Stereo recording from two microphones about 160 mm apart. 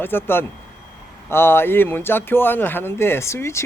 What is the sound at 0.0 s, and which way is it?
Speech, 15° left (ahead or behind).